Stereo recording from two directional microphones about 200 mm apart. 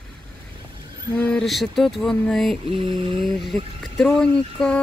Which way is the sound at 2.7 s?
25° right (ahead or behind).